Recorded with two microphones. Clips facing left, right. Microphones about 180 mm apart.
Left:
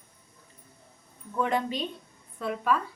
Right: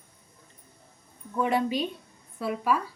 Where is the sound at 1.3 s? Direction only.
10° right (ahead or behind).